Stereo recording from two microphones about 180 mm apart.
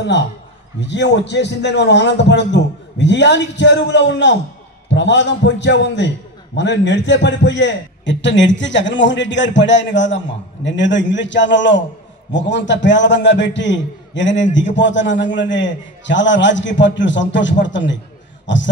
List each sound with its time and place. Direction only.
0.7 s a man's voice: 80° left